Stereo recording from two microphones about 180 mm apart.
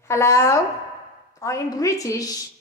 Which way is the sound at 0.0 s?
15° left (ahead or behind).